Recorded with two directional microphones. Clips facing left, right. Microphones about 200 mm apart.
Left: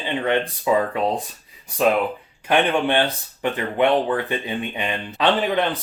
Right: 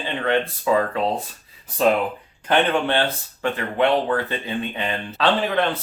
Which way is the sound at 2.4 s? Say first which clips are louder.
Left 1 dB; 15° left (ahead or behind).